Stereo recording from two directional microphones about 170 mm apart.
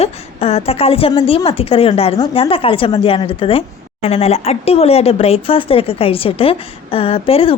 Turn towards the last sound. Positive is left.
turn(degrees=35)  # may be behind; listen again after turning